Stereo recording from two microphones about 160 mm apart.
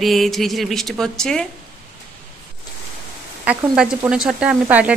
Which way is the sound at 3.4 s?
5° right (ahead or behind).